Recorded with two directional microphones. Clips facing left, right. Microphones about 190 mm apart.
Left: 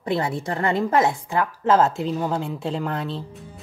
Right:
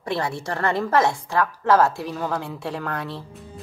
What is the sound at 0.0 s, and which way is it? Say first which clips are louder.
A woman's voice: left 2 dB; 20° left (ahead or behind).